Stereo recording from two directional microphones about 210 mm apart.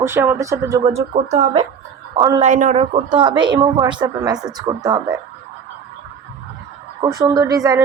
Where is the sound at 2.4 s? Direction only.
35° right (ahead or behind); by 5.0 s 20° right (ahead or behind).